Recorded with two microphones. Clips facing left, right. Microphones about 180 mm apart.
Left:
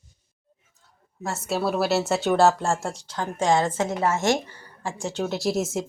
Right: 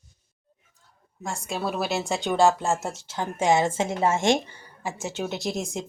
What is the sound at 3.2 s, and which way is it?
Speech, 15° right (ahead or behind).